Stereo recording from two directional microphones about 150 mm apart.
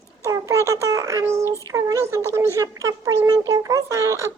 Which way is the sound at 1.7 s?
20° right (ahead or behind).